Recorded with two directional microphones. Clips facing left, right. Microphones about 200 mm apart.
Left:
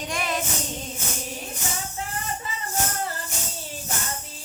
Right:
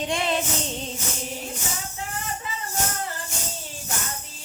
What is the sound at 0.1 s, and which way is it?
Music, 25° right (ahead or behind).